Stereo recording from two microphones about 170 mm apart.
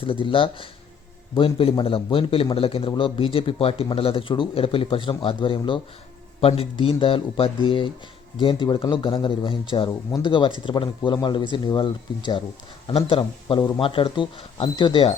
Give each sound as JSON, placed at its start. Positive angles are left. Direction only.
{"t": 0.0, "sound": "a man's voice", "side_deg": 30}